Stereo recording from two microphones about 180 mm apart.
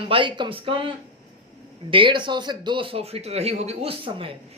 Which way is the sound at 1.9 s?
25° right (ahead or behind).